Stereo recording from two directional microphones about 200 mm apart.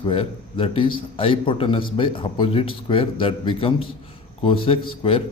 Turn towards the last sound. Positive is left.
turn(degrees=30)  # may be behind; listen again after turning